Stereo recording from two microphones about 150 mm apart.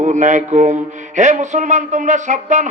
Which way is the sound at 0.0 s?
55° right (ahead or behind).